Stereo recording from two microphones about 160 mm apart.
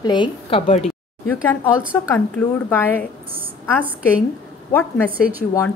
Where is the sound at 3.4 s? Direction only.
10° right (ahead or behind).